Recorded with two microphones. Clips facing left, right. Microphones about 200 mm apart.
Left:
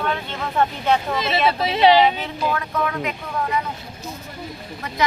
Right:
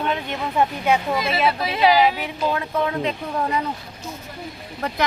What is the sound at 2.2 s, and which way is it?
Speech, 20° right (ahead or behind).